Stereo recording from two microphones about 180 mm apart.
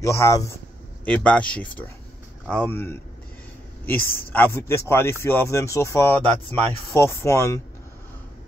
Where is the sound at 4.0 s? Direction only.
55° left (ahead or behind).